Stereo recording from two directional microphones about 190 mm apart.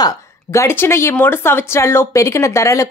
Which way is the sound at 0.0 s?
15° left (ahead or behind).